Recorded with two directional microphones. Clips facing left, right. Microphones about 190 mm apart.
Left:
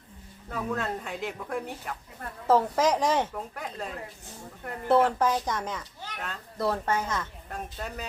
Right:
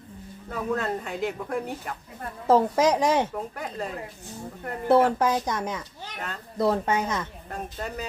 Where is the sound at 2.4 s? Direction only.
15° right (ahead or behind).